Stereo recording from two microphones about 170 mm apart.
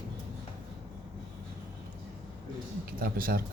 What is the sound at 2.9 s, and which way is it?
Speech, 60° right (ahead or behind).